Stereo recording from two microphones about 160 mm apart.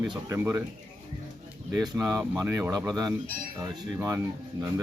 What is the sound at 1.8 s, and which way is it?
Speech, 20° right (ahead or behind).